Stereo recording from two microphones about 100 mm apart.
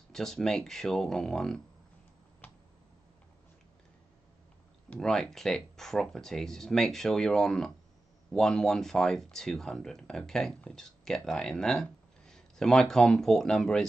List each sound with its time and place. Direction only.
0.1 s speech: 5° left (ahead or behind)
2.4 s finger snapping: 20° left (ahead or behind)
4.8 s speech: 10° left (ahead or behind)